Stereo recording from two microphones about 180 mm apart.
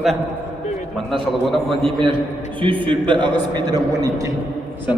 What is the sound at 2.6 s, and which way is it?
A man's voice, 30° right (ahead or behind).